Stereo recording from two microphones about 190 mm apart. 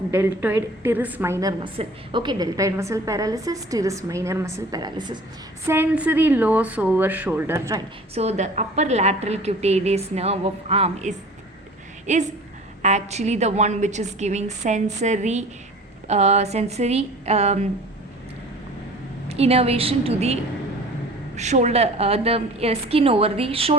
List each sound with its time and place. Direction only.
0.1 s a woman's voice: 10° right (ahead or behind)
5.6 s a woman's voice: 10° right (ahead or behind)
8.1 s a woman's voice: 35° right (ahead or behind)
19.3 s a woman's voice: 35° right (ahead or behind)